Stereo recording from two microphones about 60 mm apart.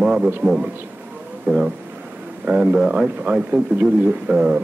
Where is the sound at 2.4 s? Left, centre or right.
Right.